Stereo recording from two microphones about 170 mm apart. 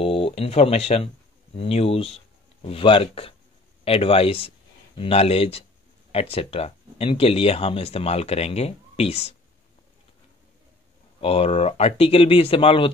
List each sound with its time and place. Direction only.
0.0 s speech: 35° left (ahead or behind)
11.1 s speech: 35° left (ahead or behind)